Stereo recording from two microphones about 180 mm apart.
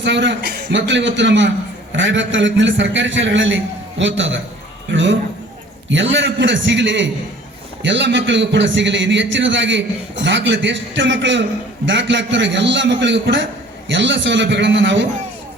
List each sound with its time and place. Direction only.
0.0 s a man's voice: 80° right
2.0 s a man's voice: 90° right
5.9 s a man's voice: 90° right